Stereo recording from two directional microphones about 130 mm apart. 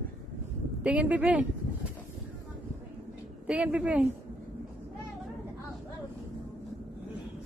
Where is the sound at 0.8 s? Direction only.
10° right (ahead or behind).